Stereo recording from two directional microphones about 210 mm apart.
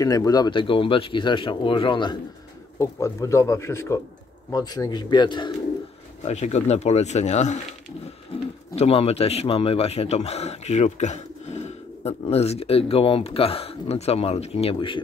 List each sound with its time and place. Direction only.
0.0 s a man's voice: 15° left (ahead or behind)
6.2 s speech: 30° left (ahead or behind)
8.7 s a man's voice: 30° left (ahead or behind)